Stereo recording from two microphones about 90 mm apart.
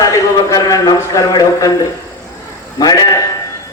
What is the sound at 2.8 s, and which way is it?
Speech, 40° left (ahead or behind).